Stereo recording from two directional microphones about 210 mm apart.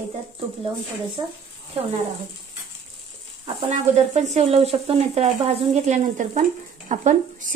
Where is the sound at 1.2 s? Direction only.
20° right (ahead or behind).